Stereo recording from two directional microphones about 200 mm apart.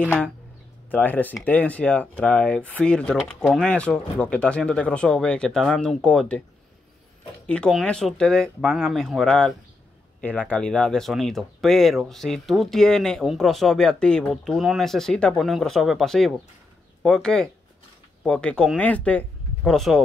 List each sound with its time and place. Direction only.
0.0 s speech: 5° left (ahead or behind)
7.4 s speech: 5° left (ahead or behind)